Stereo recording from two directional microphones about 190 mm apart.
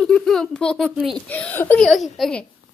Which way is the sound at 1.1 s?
5° left (ahead or behind).